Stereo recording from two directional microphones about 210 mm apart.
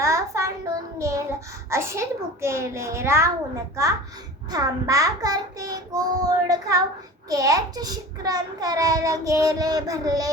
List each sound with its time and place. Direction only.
0.0 s a child's voice: 15° right (ahead or behind)